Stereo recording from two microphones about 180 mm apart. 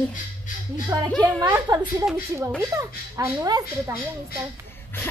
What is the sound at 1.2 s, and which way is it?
Speech, 25° right (ahead or behind).